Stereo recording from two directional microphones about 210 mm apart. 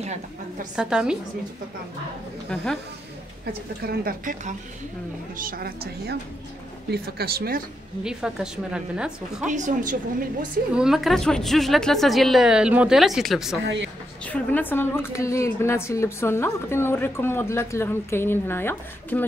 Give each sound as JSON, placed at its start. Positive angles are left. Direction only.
{"t": 0.7, "sound": "a woman's voice", "side_deg": -5}
{"t": 2.5, "sound": "a woman's voice", "side_deg": 5}
{"t": 3.8, "sound": "speech", "side_deg": -45}
{"t": 8.0, "sound": "a woman's voice", "side_deg": -5}
{"t": 9.5, "sound": "a woman's voice", "side_deg": -35}
{"t": 10.8, "sound": "a woman's voice", "side_deg": 0}